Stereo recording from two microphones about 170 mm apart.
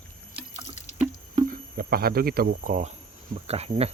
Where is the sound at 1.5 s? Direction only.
60° right (ahead or behind); by 3.9 s 35° right (ahead or behind).